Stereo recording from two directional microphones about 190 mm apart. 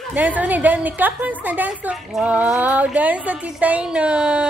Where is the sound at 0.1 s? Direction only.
10° right (ahead or behind).